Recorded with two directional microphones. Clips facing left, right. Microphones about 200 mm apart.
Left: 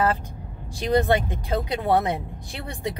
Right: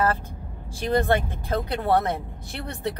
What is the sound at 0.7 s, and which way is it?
Speech, 15° left (ahead or behind).